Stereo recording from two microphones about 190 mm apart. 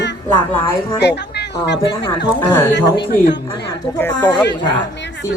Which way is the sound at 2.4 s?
10° left (ahead or behind).